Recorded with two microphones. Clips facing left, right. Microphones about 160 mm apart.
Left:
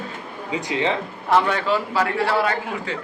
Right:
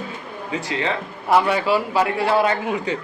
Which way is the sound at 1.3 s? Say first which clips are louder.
Right 2 dB; 10° right (ahead or behind).